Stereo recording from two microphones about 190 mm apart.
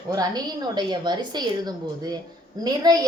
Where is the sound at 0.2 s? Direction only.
20° right (ahead or behind).